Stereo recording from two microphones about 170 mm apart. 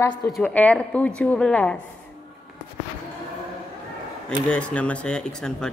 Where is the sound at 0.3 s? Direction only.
5° left (ahead or behind).